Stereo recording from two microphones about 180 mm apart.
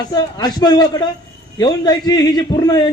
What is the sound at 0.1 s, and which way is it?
Speech, 20° left (ahead or behind).